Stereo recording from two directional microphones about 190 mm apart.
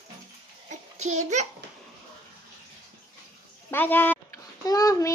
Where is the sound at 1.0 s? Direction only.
35° right (ahead or behind).